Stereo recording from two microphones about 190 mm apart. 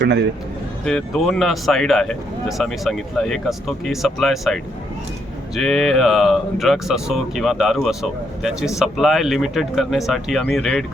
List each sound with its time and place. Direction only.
0.0 s speech: 65° right (ahead or behind)
0.9 s speech: centre (ahead or behind)